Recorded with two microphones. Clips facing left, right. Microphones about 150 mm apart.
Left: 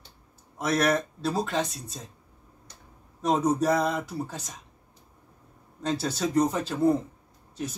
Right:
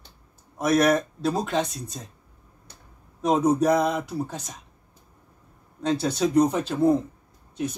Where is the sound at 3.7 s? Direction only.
15° right (ahead or behind).